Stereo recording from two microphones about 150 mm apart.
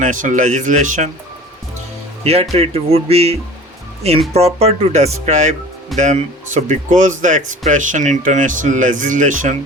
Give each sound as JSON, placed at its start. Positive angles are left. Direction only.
{"t": 0.0, "sound": "speech", "side_deg": -60}
{"t": 2.2, "sound": "speech", "side_deg": -45}